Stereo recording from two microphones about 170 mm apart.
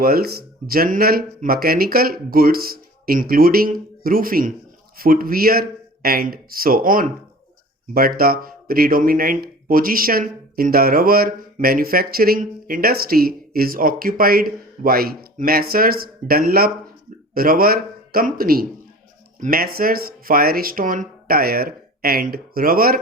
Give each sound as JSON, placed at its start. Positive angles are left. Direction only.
{"t": 0.0, "sound": "a man's voice", "side_deg": -65}